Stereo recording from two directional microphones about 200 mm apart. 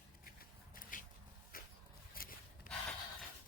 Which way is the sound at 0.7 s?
45° left (ahead or behind).